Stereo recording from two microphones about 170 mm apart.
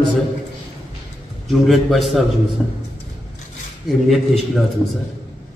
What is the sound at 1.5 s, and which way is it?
Speech, centre (ahead or behind).